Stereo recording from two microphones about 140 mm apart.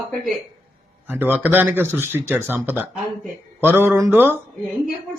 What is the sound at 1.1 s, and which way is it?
A man's voice, 10° right (ahead or behind).